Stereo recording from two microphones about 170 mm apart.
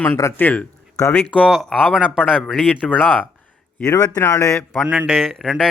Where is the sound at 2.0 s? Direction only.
10° left (ahead or behind).